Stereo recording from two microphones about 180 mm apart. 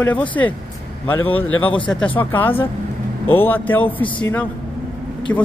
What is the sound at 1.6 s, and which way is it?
Speech, 30° left (ahead or behind).